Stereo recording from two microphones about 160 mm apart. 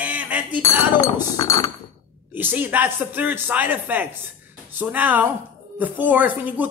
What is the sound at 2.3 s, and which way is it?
Speech, 10° right (ahead or behind).